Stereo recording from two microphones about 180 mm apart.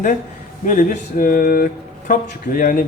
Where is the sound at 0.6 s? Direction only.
45° left (ahead or behind).